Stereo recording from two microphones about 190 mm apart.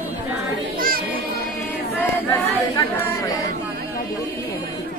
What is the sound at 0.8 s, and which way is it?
Children playing, 50° right (ahead or behind).